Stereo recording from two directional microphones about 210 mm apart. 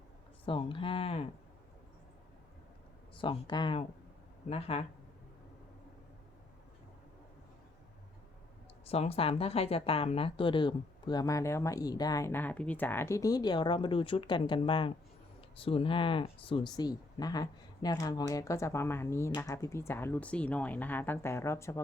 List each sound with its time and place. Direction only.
0.4 s speech: 25° left (ahead or behind)
3.2 s speech: 20° left (ahead or behind)
8.9 s speech: 30° left (ahead or behind); by 21.8 s 15° left (ahead or behind)